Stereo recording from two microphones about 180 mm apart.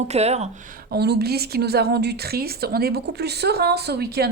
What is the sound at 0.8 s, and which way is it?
A woman's voice, 60° right (ahead or behind).